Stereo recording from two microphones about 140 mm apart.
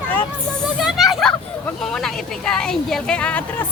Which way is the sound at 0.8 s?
Centre (ahead or behind).